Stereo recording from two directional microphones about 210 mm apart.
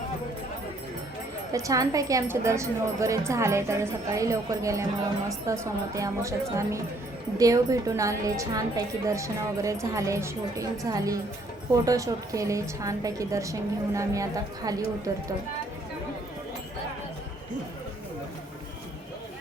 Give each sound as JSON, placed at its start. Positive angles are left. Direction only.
{"t": 1.5, "sound": "a woman's voice", "side_deg": -15}